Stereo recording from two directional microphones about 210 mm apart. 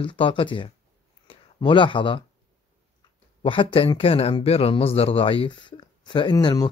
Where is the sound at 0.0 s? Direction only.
25° left (ahead or behind).